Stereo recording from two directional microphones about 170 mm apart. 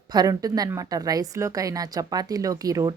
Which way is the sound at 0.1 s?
20° right (ahead or behind).